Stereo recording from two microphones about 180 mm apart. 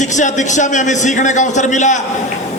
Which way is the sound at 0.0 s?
40° left (ahead or behind).